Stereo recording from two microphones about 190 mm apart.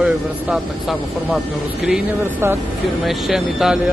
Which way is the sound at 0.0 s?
5° right (ahead or behind).